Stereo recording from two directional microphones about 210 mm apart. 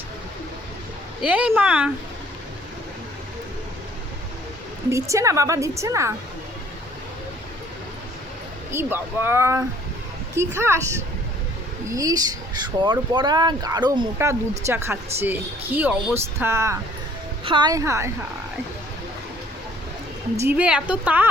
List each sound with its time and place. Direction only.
1.2 s speech: 5° right (ahead or behind)
4.9 s speech: 15° right (ahead or behind)
8.7 s speech: 10° right (ahead or behind)
11.9 s speech: 15° right (ahead or behind)
20.4 s speech: 10° right (ahead or behind)